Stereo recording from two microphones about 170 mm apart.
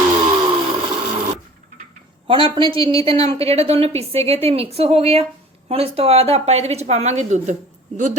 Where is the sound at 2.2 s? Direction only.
30° right (ahead or behind).